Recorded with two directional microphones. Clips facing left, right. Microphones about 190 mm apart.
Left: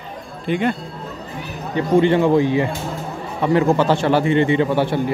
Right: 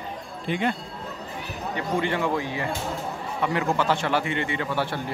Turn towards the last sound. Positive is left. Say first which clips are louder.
# left 10 dB
turn(degrees=20)  # may be behind; listen again after turning